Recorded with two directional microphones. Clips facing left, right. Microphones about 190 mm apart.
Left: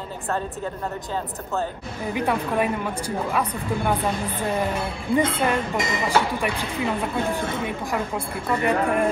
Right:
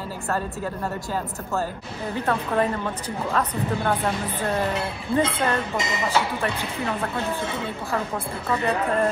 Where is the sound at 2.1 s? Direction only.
10° left (ahead or behind).